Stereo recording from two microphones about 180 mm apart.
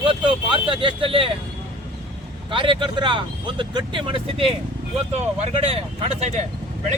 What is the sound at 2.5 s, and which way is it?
Speech, 25° right (ahead or behind).